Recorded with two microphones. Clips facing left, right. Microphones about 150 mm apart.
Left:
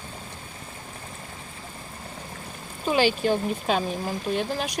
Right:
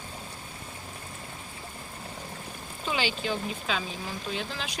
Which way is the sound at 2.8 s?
45° left (ahead or behind).